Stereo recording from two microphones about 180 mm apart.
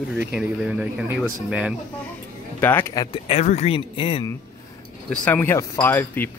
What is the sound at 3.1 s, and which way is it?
Speech, 30° left (ahead or behind).